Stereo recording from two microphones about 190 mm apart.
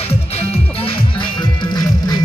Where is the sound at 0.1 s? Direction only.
30° left (ahead or behind).